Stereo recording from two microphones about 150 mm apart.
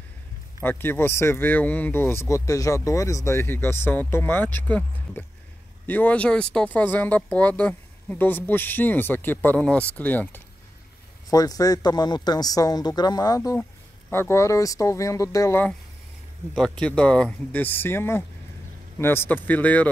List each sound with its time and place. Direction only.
0.6 s speech: 15° left (ahead or behind)
11.2 s speech: 25° left (ahead or behind)
16.8 s speech: 5° left (ahead or behind)